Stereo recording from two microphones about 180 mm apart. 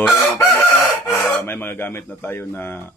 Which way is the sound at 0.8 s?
5° left (ahead or behind).